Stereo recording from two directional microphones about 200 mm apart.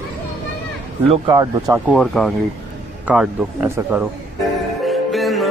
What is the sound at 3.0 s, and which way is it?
Music, 5° right (ahead or behind).